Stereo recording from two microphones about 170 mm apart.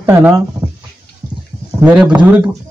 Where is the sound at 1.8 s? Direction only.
5° right (ahead or behind).